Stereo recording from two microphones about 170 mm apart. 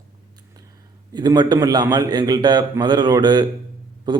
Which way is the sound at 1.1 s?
25° right (ahead or behind).